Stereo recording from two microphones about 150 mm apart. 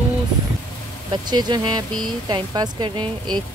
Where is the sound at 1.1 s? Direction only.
30° right (ahead or behind).